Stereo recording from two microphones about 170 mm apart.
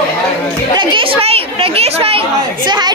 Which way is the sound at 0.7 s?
30° right (ahead or behind).